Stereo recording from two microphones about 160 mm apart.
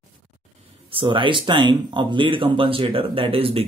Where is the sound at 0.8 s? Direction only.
35° right (ahead or behind).